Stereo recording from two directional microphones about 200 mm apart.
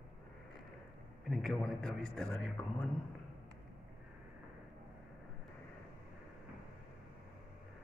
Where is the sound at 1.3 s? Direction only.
Centre (ahead or behind).